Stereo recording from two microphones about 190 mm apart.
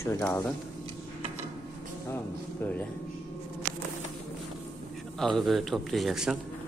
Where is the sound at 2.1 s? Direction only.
10° left (ahead or behind).